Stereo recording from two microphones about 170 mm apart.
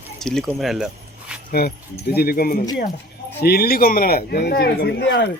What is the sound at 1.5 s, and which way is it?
A man's voice, 65° left (ahead or behind).